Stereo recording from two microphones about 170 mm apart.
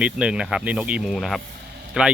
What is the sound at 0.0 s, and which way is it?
Speech, 5° right (ahead or behind).